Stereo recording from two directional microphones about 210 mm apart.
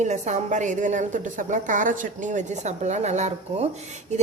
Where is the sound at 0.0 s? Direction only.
35° right (ahead or behind).